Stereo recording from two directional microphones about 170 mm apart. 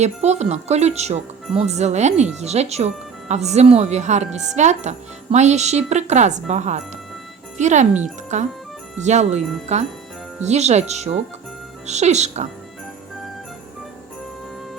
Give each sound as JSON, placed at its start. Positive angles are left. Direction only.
{"t": 0.0, "sound": "speech", "side_deg": -40}